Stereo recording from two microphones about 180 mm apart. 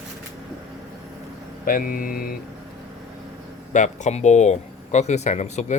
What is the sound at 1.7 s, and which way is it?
Speech, 50° left (ahead or behind).